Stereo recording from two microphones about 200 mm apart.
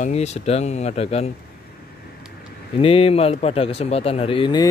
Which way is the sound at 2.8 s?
30° left (ahead or behind).